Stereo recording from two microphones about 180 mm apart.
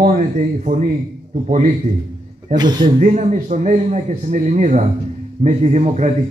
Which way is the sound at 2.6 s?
25° right (ahead or behind).